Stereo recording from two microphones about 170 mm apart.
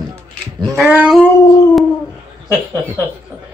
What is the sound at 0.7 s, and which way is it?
Speech, 10° right (ahead or behind).